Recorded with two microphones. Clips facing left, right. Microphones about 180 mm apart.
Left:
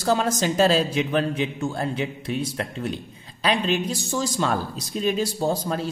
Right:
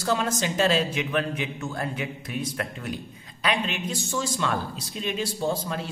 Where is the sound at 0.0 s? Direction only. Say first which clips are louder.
Left 4 dB; 35° left (ahead or behind).